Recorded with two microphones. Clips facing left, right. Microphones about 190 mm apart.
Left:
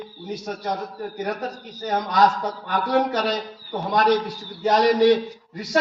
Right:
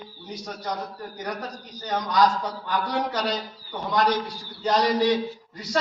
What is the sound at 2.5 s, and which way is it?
A man's voice, 50° left (ahead or behind).